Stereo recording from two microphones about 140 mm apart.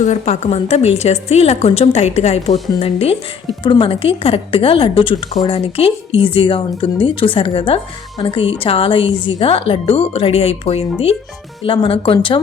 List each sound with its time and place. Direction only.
0.0 s a woman's voice: 55° left (ahead or behind); by 12.4 s 35° left (ahead or behind)